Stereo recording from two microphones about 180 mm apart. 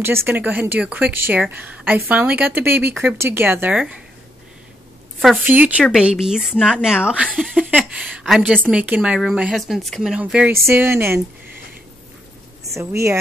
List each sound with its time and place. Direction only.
0.0 s speech: 15° right (ahead or behind)
5.4 s a woman's voice: 10° right (ahead or behind)
12.7 s speech: 15° right (ahead or behind)